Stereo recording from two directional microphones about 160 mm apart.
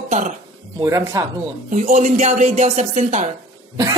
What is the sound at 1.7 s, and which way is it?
Speech, 45° right (ahead or behind).